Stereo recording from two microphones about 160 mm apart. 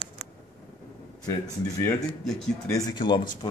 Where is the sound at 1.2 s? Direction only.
20° left (ahead or behind).